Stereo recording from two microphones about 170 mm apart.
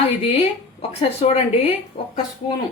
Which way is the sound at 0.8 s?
40° left (ahead or behind).